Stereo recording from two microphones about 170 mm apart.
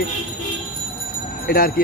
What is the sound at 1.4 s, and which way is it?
Speech, 60° left (ahead or behind).